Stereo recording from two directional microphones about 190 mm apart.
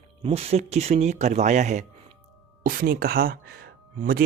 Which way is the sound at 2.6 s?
50° right (ahead or behind).